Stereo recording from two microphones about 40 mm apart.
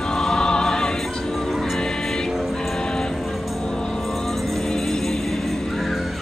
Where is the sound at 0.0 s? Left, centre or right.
Centre.